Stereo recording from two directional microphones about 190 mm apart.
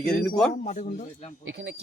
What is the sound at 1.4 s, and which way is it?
Speech, 80° right.